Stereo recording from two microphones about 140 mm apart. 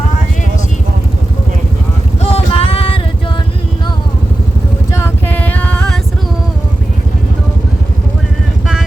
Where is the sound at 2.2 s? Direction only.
45° left (ahead or behind).